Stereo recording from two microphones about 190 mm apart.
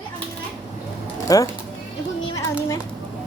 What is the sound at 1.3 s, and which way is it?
Speech, 20° left (ahead or behind).